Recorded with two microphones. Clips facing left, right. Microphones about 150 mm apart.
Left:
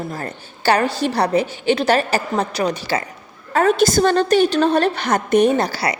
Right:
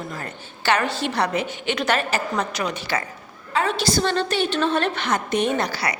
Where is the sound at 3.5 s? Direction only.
45° left (ahead or behind).